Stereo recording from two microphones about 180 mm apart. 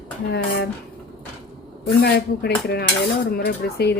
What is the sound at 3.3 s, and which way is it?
Speech, 60° left (ahead or behind).